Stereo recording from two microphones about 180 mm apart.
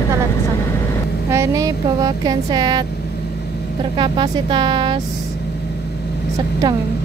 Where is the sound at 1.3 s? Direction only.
15° right (ahead or behind).